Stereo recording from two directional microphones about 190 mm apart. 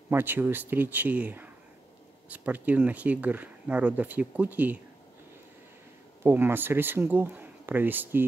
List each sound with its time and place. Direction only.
0.1 s speech: 10° right (ahead or behind)
6.2 s speech: 10° right (ahead or behind)